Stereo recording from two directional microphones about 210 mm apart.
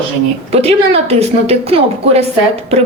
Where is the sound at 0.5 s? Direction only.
30° right (ahead or behind).